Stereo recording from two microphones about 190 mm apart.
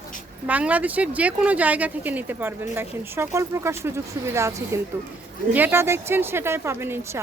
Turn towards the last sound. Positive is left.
turn(degrees=-15)  # may be behind; listen again after turning